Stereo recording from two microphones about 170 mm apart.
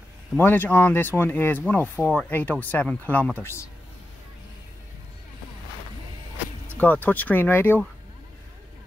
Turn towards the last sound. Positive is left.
turn(degrees=10)  # may be behind; listen again after turning